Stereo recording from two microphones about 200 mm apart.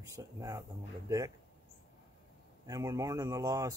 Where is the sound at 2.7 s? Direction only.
15° right (ahead or behind).